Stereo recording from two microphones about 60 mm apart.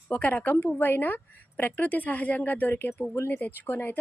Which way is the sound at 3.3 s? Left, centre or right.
Left.